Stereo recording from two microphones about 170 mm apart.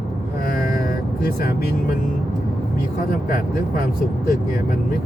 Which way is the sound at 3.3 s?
55° left (ahead or behind).